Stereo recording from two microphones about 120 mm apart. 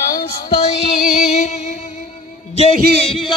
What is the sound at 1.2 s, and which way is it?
Music, 70° left (ahead or behind).